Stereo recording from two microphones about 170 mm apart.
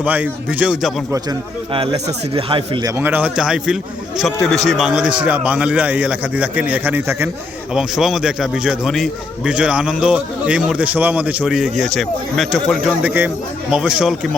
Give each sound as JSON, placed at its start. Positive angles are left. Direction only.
{"t": 0.0, "sound": "a man's voice", "side_deg": -10}
{"t": 1.7, "sound": "speech", "side_deg": -35}
{"t": 2.8, "sound": "a man's voice", "side_deg": -10}